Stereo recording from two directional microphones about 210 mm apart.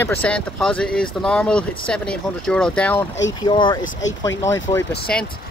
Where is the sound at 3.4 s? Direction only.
20° left (ahead or behind).